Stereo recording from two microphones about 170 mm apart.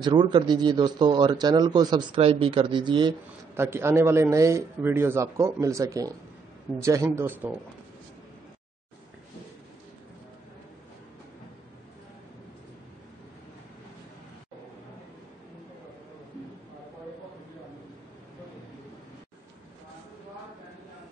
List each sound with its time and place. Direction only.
0.0 s speech: 25° right (ahead or behind)
3.5 s a man's voice: 15° right (ahead or behind)